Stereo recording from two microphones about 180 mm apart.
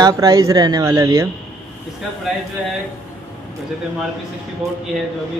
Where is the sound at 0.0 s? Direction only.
20° right (ahead or behind).